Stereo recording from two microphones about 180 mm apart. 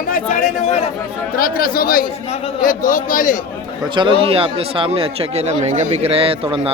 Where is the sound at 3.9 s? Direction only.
30° right (ahead or behind).